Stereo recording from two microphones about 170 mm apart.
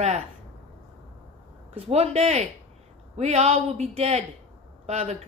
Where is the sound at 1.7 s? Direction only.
35° right (ahead or behind).